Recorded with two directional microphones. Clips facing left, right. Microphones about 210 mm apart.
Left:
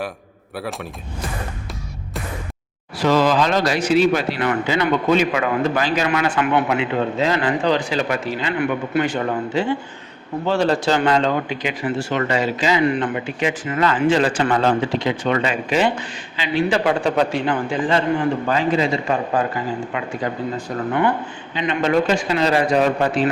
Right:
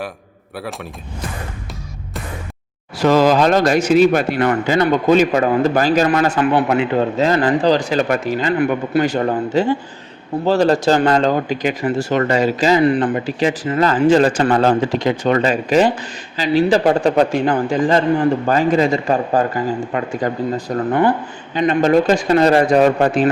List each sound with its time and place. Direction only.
0.5 s speech: centre (ahead or behind)
3.0 s speech: 45° right (ahead or behind)